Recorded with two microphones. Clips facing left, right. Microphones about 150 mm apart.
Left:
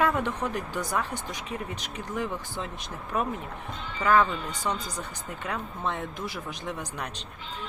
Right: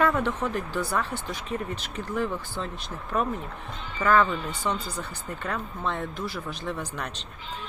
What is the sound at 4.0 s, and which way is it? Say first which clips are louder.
Speech: right 1 dB; 15° left (ahead or behind).